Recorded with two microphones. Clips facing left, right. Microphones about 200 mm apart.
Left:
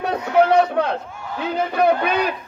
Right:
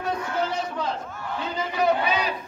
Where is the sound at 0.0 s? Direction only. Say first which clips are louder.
Left 9 dB; 65° left (ahead or behind).